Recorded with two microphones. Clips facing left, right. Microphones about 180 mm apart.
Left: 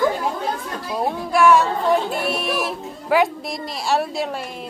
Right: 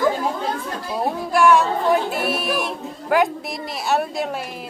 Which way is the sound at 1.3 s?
Centre (ahead or behind).